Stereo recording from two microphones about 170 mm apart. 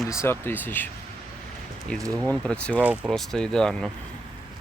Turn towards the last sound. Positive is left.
turn(degrees=5)  # may be behind; listen again after turning